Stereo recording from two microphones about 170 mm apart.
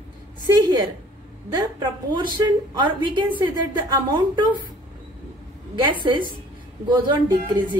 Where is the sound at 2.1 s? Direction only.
30° right (ahead or behind).